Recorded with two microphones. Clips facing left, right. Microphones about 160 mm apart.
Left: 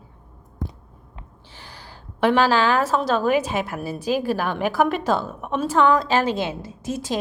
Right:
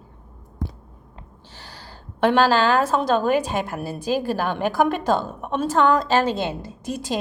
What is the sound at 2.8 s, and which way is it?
A woman's voice, 5° left (ahead or behind).